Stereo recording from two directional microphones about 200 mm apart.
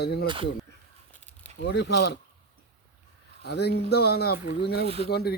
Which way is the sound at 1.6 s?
55° left (ahead or behind).